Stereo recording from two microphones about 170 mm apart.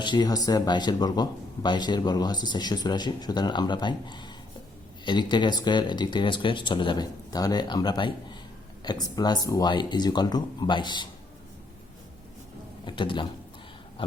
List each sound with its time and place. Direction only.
0.0 s a man's voice: 25° left (ahead or behind)
12.8 s speech: 30° left (ahead or behind)